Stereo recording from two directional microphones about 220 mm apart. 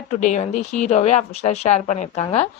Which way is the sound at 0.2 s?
35° left (ahead or behind).